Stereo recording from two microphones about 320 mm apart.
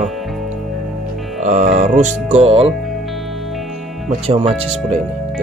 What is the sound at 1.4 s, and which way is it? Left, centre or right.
Speech, right.